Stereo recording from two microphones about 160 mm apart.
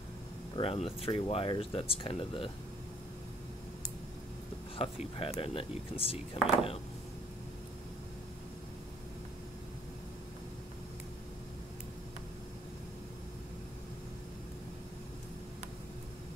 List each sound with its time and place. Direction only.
0.6 s speech: 35° left (ahead or behind)
4.7 s speech: 35° left (ahead or behind)